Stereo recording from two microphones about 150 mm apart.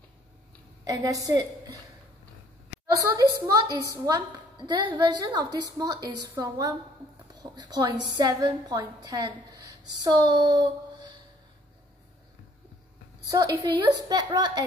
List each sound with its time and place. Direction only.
0.8 s a woman's voice: 25° right (ahead or behind)
2.9 s a woman's voice: 20° right (ahead or behind)
13.3 s a woman's voice: 25° right (ahead or behind)